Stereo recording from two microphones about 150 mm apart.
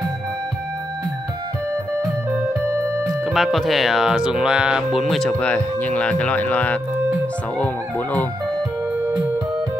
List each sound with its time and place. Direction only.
2.3 s music: 15° right (ahead or behind)
3.3 s speech: centre (ahead or behind)